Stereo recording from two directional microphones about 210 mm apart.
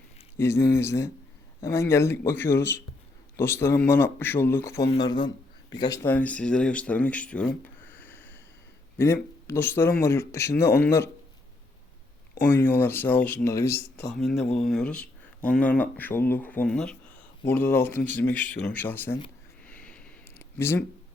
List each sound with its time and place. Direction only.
0.3 s speech: 10° left (ahead or behind)
10.7 s speech: 50° left (ahead or behind)
12.4 s speech: 10° left (ahead or behind)
19.6 s a sound: 5° left (ahead or behind)